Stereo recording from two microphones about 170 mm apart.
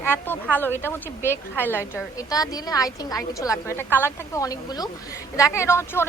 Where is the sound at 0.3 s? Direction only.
10° left (ahead or behind).